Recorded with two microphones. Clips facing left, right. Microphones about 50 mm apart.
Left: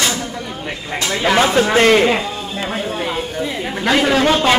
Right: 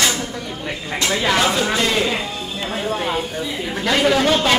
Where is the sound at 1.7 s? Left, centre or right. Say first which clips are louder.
Left 7 dB; left.